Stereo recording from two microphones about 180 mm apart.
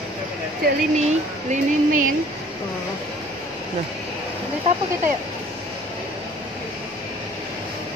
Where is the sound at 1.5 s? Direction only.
45° right (ahead or behind).